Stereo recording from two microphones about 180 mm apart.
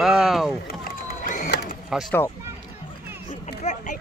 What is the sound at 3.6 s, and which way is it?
Speech, 40° left (ahead or behind).